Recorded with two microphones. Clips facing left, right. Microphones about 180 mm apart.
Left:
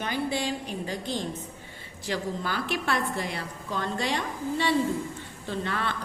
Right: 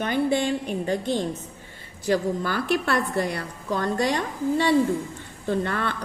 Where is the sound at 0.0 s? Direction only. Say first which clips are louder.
Right 6 dB; 50° right (ahead or behind).